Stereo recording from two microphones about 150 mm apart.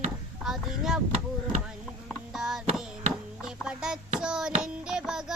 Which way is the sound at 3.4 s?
5° right (ahead or behind).